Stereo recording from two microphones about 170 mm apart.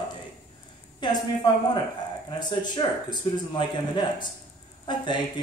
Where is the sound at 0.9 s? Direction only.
25° left (ahead or behind).